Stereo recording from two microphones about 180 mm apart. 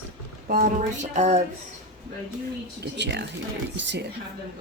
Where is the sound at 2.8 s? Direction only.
70° right (ahead or behind).